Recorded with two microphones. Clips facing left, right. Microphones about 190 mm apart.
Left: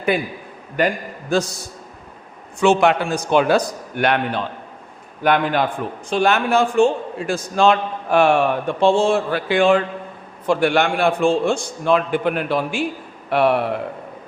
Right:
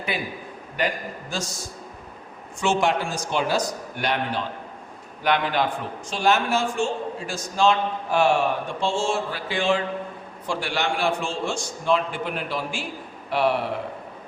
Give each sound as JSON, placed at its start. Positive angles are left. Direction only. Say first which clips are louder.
{"t": 0.1, "sound": "a man's voice", "louder": "left 7 dB", "side_deg": 50}
{"t": 1.3, "sound": "a man's voice", "louder": "left 14 dB", "side_deg": 60}